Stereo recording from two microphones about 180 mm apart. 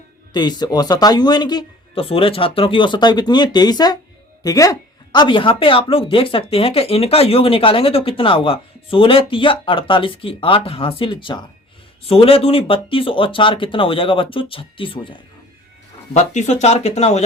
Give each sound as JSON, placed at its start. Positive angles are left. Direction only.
{"t": 0.3, "sound": "speech", "side_deg": 25}
{"t": 16.1, "sound": "speech", "side_deg": 40}